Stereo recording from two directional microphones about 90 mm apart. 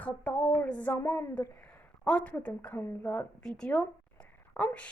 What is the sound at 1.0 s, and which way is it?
Speech, 30° left (ahead or behind).